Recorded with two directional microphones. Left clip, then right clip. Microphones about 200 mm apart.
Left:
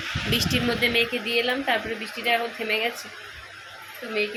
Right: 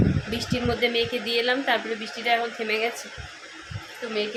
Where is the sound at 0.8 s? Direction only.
10° right (ahead or behind).